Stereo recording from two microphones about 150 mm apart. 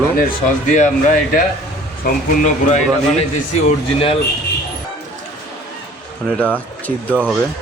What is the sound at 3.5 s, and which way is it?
Speech, 40° left (ahead or behind).